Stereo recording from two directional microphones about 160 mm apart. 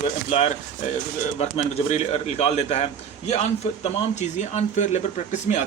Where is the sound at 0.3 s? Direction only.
40° left (ahead or behind).